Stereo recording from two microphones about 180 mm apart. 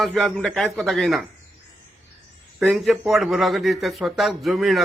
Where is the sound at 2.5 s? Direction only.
5° right (ahead or behind).